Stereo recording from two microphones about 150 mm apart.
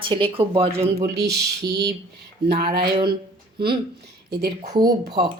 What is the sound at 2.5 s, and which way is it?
Speech, 90° right.